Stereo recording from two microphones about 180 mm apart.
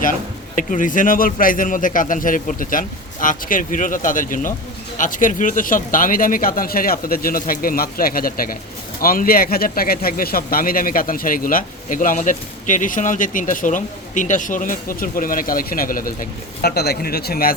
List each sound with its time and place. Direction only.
0.5 s speech: 45° left (ahead or behind)
16.6 s a man's voice: 65° left (ahead or behind)